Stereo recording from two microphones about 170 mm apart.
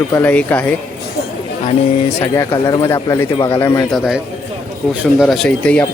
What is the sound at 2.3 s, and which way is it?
Speech, 20° left (ahead or behind).